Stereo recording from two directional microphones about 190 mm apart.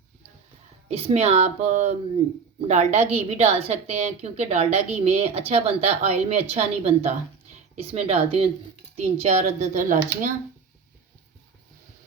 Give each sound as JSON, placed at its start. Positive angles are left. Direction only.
{"t": 0.9, "sound": "a woman's voice", "side_deg": -35}